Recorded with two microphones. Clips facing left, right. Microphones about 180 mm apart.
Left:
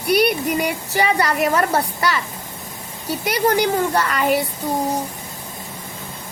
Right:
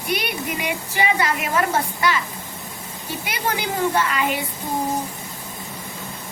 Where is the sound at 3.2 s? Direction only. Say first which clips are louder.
Left 8 dB; 40° left (ahead or behind).